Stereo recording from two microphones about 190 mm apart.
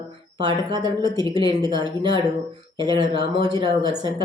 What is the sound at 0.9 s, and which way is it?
Speech, 20° right (ahead or behind).